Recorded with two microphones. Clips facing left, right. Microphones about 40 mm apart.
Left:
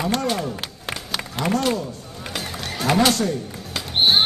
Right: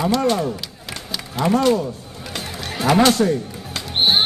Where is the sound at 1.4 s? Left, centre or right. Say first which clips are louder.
Right 4 dB; left.